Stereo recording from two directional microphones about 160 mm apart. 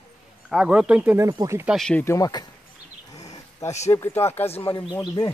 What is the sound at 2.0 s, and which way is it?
Speech, 20° left (ahead or behind).